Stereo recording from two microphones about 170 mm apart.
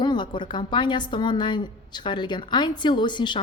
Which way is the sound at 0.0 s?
25° left (ahead or behind).